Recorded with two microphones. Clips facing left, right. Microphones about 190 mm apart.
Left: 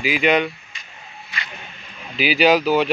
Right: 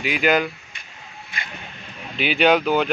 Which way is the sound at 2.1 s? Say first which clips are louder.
Left 1 dB; 5° left (ahead or behind).